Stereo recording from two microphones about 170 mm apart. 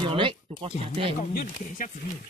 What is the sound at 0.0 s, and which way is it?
Speech, 30° right (ahead or behind).